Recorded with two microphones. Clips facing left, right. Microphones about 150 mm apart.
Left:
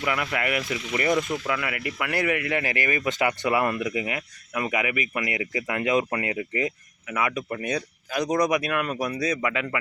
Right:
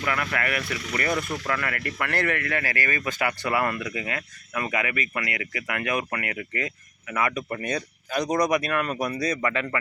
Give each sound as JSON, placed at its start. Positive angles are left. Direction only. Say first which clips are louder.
{"t": 0.0, "sound": "speech", "louder": "left 1 dB", "side_deg": 15}
{"t": 7.1, "sound": "speech", "louder": "even", "side_deg": 5}